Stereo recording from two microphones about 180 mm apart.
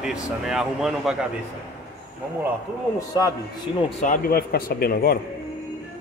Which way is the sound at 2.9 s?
20° left (ahead or behind).